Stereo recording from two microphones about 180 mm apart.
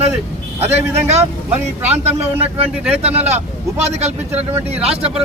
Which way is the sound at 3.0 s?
35° right (ahead or behind).